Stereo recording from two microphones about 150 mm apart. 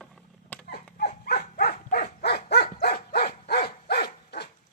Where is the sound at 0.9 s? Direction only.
90° left.